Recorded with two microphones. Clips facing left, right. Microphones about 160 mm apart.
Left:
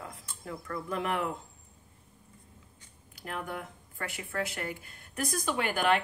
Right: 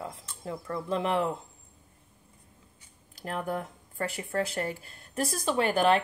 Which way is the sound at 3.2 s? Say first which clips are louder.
Right 5 dB; 35° right (ahead or behind).